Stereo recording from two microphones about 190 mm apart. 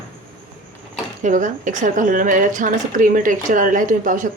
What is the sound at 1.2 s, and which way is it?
A woman's voice, 40° right (ahead or behind).